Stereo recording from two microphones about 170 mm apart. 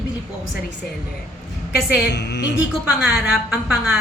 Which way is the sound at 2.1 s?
85° left.